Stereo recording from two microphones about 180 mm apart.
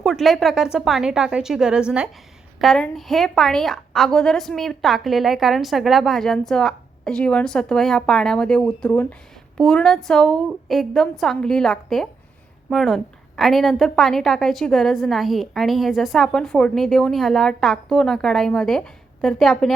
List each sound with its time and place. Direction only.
0.0 s a woman's voice: centre (ahead or behind)